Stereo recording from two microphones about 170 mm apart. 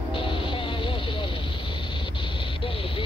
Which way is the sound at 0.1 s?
30° left (ahead or behind).